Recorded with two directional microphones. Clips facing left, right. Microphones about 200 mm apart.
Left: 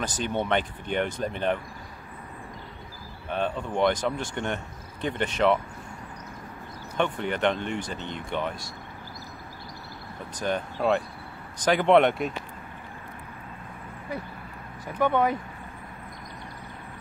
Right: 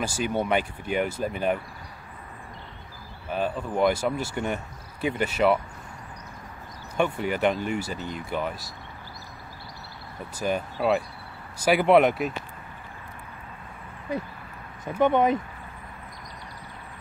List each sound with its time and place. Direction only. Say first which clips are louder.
0.0 s speech: right 2 dB; 10° right (ahead or behind)
3.3 s speech: right 1 dB; 5° right (ahead or behind)
7.0 s speech: right 2 dB; 5° right (ahead or behind)
10.3 s speech: right 1 dB; 5° right (ahead or behind)
15.0 s speech: right 3 dB; 20° right (ahead or behind)